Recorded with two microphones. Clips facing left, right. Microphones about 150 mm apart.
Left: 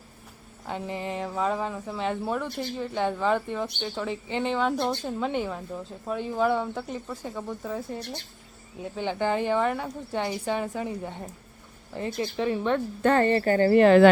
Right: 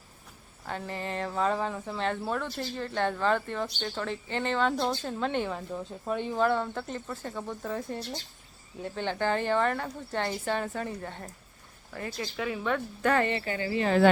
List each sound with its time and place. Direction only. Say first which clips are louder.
0.7 s a woman's voice: left 3 dB; 15° left (ahead or behind); by 13.8 s 50° left (ahead or behind)
13.8 s speech: left 6 dB; 75° left (ahead or behind)